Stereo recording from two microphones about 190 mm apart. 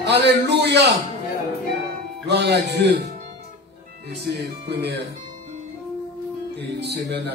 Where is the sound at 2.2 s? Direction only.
60° right (ahead or behind).